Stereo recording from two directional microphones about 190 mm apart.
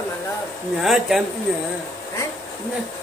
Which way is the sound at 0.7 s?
Centre (ahead or behind).